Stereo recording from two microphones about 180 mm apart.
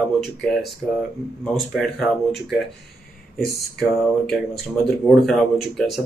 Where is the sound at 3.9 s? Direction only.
Centre (ahead or behind).